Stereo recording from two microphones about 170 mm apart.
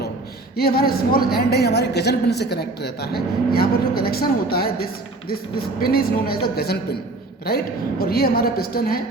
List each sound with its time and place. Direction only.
0.5 s a woman's voice: 65° left (ahead or behind)